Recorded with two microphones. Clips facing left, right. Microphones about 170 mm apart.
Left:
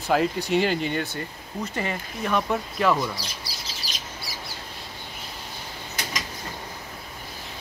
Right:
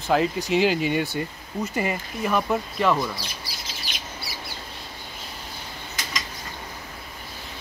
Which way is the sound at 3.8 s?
35° left (ahead or behind).